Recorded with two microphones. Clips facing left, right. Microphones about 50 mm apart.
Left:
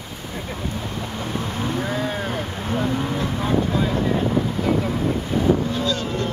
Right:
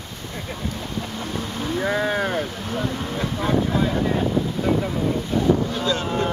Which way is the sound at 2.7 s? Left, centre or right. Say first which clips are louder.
Left 6 dB; centre.